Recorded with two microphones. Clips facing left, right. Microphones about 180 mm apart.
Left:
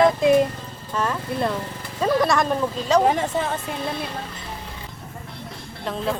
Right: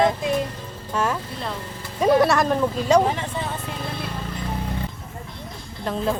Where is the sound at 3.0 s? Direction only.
45° left (ahead or behind).